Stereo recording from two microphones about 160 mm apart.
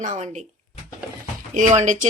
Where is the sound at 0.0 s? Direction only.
45° right (ahead or behind).